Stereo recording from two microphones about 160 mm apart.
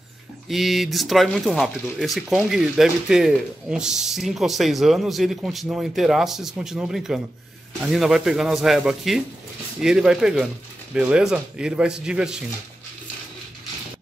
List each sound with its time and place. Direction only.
0.5 s speech: centre (ahead or behind)